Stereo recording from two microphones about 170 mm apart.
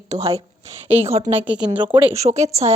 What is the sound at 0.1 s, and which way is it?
A woman's voice, 40° right (ahead or behind).